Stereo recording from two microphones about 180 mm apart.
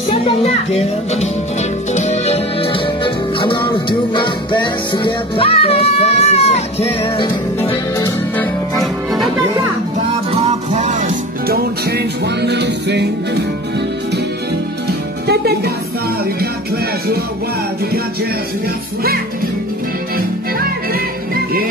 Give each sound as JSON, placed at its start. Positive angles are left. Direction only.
{"t": 0.1, "sound": "a child's voice", "side_deg": 35}
{"t": 2.0, "sound": "music", "side_deg": 40}
{"t": 7.6, "sound": "music", "side_deg": 15}
{"t": 10.3, "sound": "music", "side_deg": -35}
{"t": 15.2, "sound": "music", "side_deg": -60}